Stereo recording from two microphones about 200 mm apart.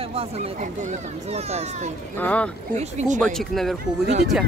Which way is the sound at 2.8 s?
35° right (ahead or behind).